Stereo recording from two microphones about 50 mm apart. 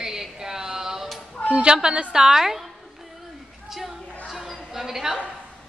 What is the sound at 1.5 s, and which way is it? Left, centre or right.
A woman's voice, centre.